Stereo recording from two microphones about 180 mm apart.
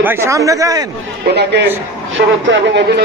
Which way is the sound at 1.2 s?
65° right (ahead or behind).